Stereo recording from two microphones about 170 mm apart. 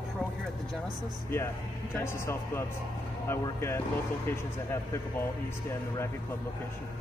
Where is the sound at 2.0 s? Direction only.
15° left (ahead or behind).